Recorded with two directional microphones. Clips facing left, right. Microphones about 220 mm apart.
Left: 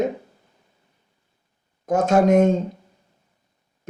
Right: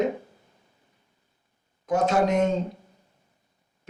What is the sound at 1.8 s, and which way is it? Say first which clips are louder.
Speech: left 5 dB; 45° left (ahead or behind).